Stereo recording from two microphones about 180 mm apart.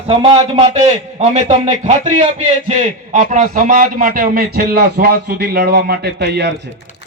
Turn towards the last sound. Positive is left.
turn(degrees=-65)  # may be behind; listen again after turning